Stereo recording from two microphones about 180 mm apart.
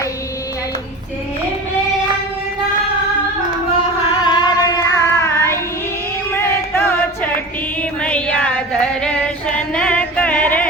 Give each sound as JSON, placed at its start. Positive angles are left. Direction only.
{"t": 4.2, "sound": "child singing", "side_deg": 25}
{"t": 6.3, "sound": "music", "side_deg": 10}
{"t": 7.8, "sound": "female singing", "side_deg": 5}